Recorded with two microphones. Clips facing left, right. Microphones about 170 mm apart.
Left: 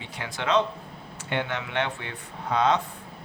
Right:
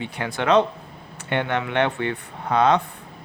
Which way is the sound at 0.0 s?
60° right (ahead or behind).